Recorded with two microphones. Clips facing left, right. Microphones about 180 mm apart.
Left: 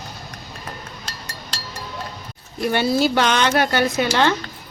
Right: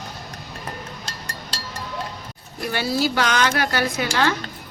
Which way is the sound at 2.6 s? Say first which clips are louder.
Left 4 dB; 25° left (ahead or behind).